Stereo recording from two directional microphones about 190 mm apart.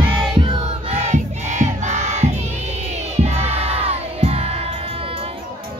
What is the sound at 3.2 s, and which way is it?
Music, 35° right (ahead or behind).